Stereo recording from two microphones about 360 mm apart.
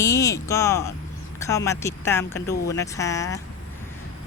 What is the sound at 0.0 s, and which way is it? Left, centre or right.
Speech, centre.